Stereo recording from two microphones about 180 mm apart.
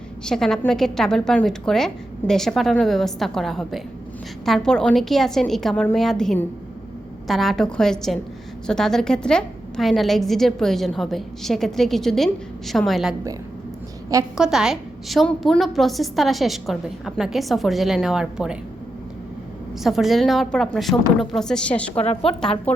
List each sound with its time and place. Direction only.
0.3 s a woman's voice: centre (ahead or behind)
14.3 s a woman's voice: 5° right (ahead or behind)
19.8 s a woman's voice: centre (ahead or behind)
21.9 s a woman's voice: 35° left (ahead or behind)